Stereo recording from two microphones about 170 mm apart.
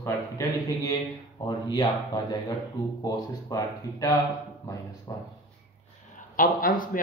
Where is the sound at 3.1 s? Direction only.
20° left (ahead or behind).